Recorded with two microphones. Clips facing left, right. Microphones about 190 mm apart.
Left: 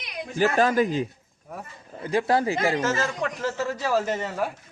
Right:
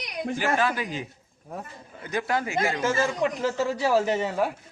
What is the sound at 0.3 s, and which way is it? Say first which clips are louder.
Speech: left 6 dB; 40° left (ahead or behind).